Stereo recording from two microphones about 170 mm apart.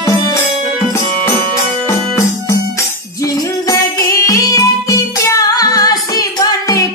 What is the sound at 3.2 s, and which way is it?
Music, 20° left (ahead or behind).